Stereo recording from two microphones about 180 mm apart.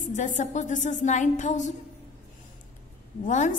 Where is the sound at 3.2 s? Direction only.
45° left (ahead or behind).